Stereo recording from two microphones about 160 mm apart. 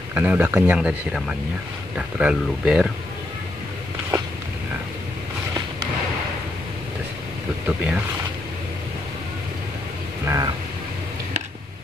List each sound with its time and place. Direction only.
0.1 s speech: 10° right (ahead or behind)
7.6 s speech: 10° right (ahead or behind)
10.2 s a sound: 20° right (ahead or behind)